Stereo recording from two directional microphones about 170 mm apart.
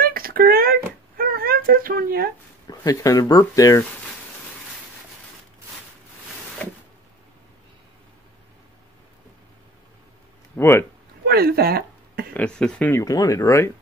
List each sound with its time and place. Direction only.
0.0 s a sound: 60° right (ahead or behind)
2.6 s speech: 20° left (ahead or behind)
10.5 s speech: 15° left (ahead or behind)
11.2 s speech: 65° right (ahead or behind)
12.4 s speech: 5° left (ahead or behind)